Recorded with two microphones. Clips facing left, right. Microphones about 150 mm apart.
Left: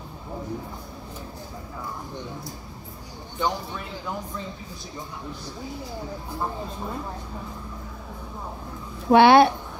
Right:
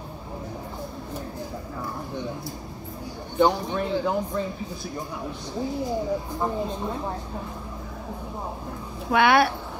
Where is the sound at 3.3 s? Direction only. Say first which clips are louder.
Right 7 dB; 60° right (ahead or behind).